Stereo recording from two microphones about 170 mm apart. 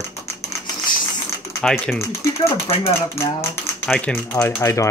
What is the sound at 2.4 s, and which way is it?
Speech, 35° left (ahead or behind).